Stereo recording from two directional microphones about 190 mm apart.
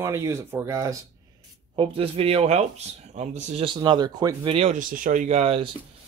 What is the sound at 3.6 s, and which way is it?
Speech, 25° right (ahead or behind).